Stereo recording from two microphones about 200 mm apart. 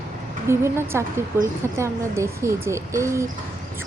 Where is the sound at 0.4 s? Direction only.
15° right (ahead or behind).